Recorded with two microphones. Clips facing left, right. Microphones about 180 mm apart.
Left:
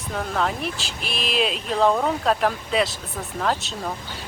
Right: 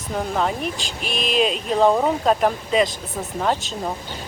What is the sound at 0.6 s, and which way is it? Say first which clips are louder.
Speech: right 2 dB; 40° right (ahead or behind).